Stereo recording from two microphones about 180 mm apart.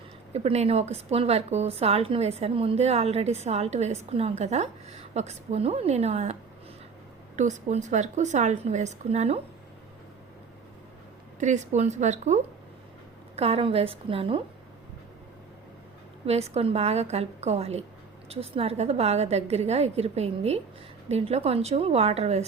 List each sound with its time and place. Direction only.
0.3 s a woman's voice: 35° right (ahead or behind)
7.3 s a woman's voice: 40° right (ahead or behind)
11.3 s a woman's voice: 40° right (ahead or behind)
16.2 s a woman's voice: 35° right (ahead or behind)